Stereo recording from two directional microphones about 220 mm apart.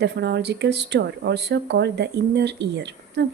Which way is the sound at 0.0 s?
50° right (ahead or behind).